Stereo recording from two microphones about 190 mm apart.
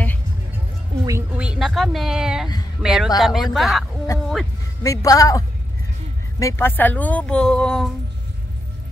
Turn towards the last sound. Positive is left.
turn(degrees=5)  # may be behind; listen again after turning